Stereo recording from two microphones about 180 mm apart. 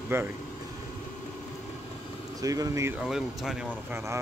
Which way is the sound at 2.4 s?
20° right (ahead or behind).